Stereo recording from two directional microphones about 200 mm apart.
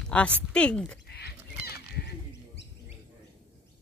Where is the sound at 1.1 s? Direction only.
55° left (ahead or behind).